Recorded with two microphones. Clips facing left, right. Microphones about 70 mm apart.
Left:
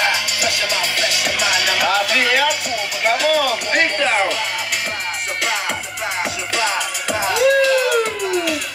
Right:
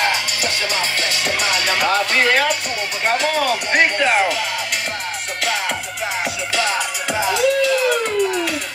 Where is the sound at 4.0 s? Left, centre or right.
Centre.